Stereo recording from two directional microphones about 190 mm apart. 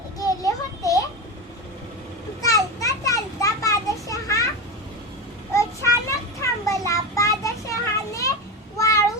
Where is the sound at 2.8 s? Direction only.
15° left (ahead or behind).